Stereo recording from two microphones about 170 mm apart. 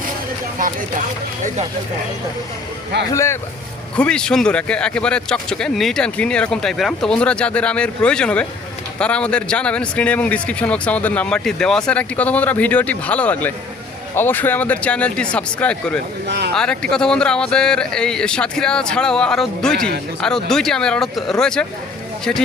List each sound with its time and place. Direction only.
3.1 s speech: 15° left (ahead or behind)
3.9 s speech: 5° left (ahead or behind)
16.2 s speech: 75° right (ahead or behind)
16.9 s speech: 5° left (ahead or behind)